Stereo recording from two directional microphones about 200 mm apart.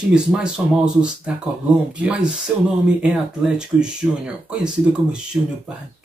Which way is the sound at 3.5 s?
5° right (ahead or behind).